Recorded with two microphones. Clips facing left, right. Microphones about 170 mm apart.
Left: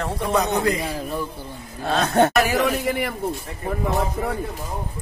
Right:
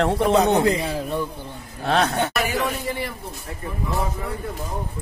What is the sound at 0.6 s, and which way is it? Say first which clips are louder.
Speech: right 2 dB; 25° right (ahead or behind).